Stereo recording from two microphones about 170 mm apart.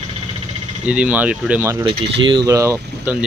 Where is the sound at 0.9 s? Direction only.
5° right (ahead or behind).